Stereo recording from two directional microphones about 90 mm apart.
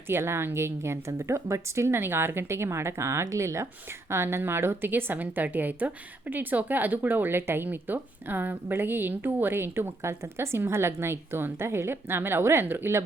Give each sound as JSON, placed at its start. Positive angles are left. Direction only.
{"t": 0.1, "sound": "speech", "side_deg": -25}